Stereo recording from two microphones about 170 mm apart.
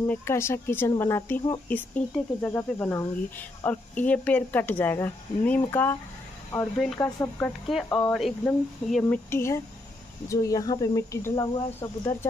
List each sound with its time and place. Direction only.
0.0 s speech: 15° left (ahead or behind)
7.0 s speech: 15° left (ahead or behind)